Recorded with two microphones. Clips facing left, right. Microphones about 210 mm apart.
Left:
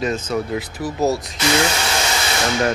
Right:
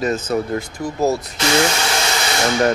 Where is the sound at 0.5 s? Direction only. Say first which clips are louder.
Right 1 dB; 5° left (ahead or behind).